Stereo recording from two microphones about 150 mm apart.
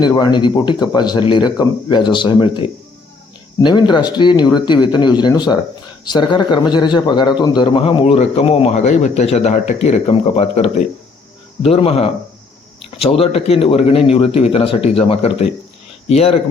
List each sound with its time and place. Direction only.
0.0 s speech: 30° left (ahead or behind)